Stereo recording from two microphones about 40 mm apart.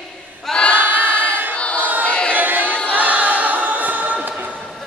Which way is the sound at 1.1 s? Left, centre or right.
Left.